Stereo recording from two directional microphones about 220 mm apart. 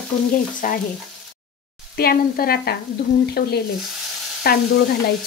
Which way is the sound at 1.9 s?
45° left (ahead or behind).